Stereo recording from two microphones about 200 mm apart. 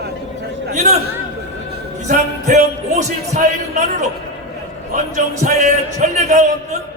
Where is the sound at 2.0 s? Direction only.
35° right (ahead or behind).